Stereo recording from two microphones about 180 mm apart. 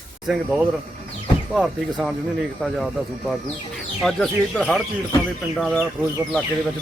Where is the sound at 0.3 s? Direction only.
Centre (ahead or behind).